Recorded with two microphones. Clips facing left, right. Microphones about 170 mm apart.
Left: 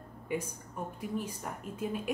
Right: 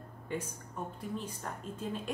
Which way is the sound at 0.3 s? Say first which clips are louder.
Left 3 dB; 10° left (ahead or behind).